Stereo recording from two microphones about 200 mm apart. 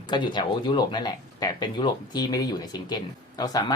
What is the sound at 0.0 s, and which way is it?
Speech, 20° left (ahead or behind).